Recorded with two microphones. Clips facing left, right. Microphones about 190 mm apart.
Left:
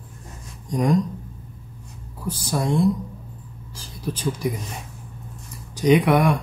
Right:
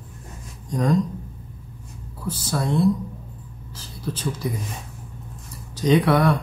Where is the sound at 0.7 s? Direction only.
15° left (ahead or behind).